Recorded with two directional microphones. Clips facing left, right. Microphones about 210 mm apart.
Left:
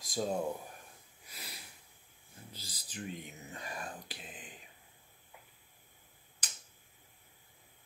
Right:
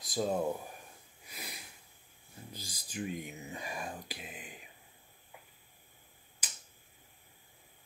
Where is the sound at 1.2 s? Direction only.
15° right (ahead or behind).